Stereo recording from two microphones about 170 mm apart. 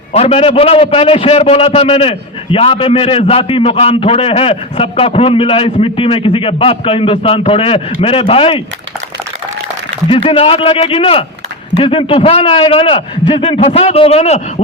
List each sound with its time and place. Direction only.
0.1 s a man's voice: 35° left (ahead or behind)
10.1 s a man's voice: 35° left (ahead or behind)